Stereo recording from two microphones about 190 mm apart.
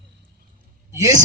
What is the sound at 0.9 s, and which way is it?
Speech, 15° right (ahead or behind).